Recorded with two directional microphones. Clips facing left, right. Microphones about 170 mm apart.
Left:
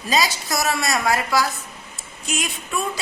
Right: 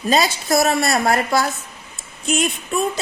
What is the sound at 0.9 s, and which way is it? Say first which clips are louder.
Speech: right 3 dB; 50° right (ahead or behind).